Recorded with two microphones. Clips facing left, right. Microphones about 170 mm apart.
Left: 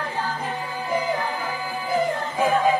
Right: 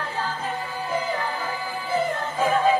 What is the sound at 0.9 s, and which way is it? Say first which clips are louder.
Music: left 3 dB; 15° left (ahead or behind).